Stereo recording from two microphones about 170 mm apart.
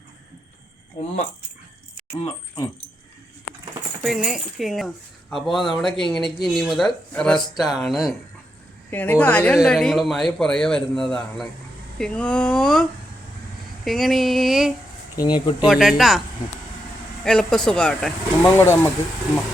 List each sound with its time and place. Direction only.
2.1 s speech: 30° left (ahead or behind)
4.0 s speech: centre (ahead or behind)
8.9 s speech: 10° left (ahead or behind)
13.8 s speech: centre (ahead or behind)
15.1 s speech: 20° left (ahead or behind)
15.6 s speech: centre (ahead or behind)
17.2 s speech: 5° left (ahead or behind)